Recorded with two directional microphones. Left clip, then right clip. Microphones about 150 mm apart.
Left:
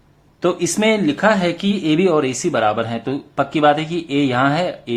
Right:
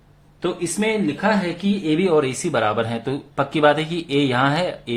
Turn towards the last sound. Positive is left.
turn(degrees=15)  # may be behind; listen again after turning